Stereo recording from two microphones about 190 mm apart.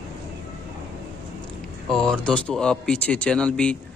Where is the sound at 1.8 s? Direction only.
5° left (ahead or behind).